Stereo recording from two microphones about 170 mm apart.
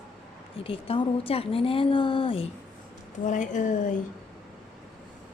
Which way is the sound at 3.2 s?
45° left (ahead or behind).